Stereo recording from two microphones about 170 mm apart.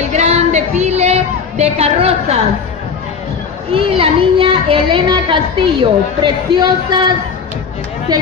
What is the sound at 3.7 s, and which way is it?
A woman's voice, 30° right (ahead or behind).